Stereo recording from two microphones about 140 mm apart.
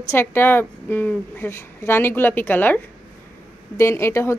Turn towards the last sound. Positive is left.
turn(degrees=20)  # may be behind; listen again after turning